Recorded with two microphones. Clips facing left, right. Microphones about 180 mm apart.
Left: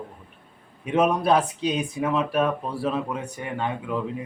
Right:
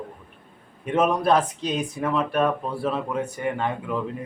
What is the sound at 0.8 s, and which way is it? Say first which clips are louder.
Speech: even; centre (ahead or behind).